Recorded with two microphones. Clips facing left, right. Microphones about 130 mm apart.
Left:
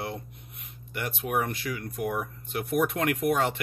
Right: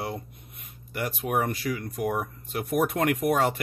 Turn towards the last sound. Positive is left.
turn(degrees=-40)  # may be behind; listen again after turning